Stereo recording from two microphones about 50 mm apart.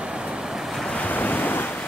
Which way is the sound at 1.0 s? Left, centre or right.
Left.